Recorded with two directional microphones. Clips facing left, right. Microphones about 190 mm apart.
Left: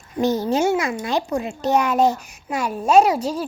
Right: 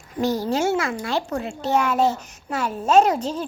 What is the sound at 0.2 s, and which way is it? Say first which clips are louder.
A child's voice: left 3 dB; 20° left (ahead or behind).